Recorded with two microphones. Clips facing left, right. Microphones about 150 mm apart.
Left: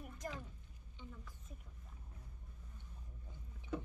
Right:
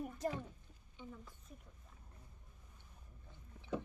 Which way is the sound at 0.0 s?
30° right (ahead or behind).